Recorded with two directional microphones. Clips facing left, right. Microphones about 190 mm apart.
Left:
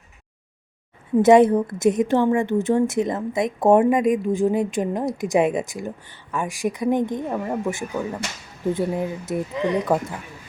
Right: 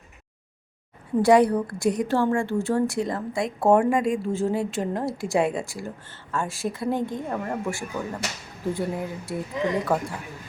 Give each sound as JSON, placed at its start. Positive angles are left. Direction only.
{"t": 1.2, "sound": "a woman's voice", "side_deg": 20}